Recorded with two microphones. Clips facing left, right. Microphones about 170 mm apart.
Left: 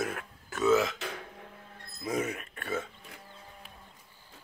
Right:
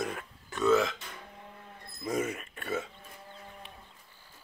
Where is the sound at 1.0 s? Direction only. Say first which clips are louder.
Left 8 dB; 80° left.